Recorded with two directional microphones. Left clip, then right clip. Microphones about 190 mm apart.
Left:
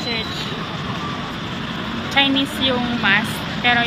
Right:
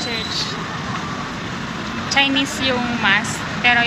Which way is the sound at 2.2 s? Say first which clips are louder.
Even; 10° left (ahead or behind).